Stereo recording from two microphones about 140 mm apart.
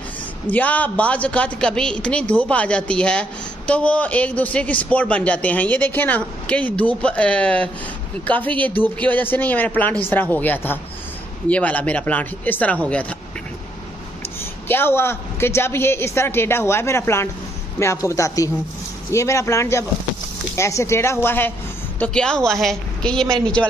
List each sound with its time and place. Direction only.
0.5 s a woman's voice: 10° left (ahead or behind)
14.4 s a woman's voice: 15° left (ahead or behind)